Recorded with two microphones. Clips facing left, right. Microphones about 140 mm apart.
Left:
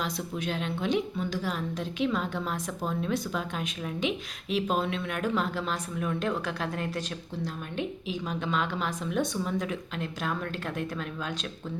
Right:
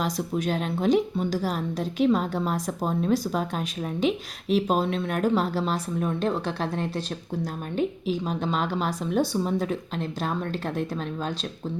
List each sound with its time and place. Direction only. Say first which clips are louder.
0.0 s speech: right 6 dB; 40° right (ahead or behind)